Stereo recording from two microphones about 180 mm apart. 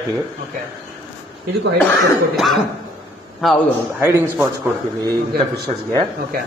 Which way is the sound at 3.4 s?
Centre (ahead or behind).